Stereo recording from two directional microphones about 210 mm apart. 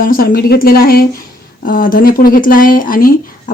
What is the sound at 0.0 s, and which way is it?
Speech, 45° left (ahead or behind).